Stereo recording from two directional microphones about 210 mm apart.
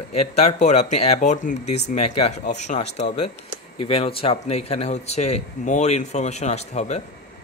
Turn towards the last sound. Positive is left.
turn(degrees=30)  # may be behind; listen again after turning